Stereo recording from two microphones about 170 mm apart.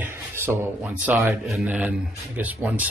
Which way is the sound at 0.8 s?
5° right (ahead or behind).